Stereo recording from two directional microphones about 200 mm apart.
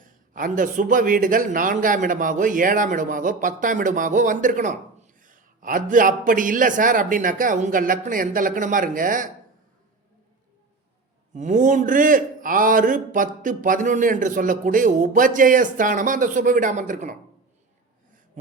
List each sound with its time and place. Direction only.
0.0 s a man's voice: 40° right (ahead or behind)
11.3 s a man's voice: 40° right (ahead or behind)